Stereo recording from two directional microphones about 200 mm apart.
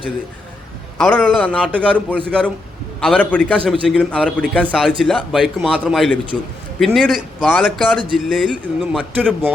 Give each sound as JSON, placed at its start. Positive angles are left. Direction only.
{"t": 0.9, "sound": "a man's voice", "side_deg": 5}